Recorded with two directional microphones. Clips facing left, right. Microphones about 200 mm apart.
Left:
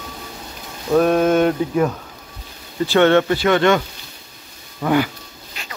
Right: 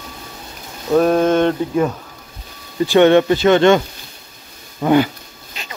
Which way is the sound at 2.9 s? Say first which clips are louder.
Right 3 dB; 15° right (ahead or behind).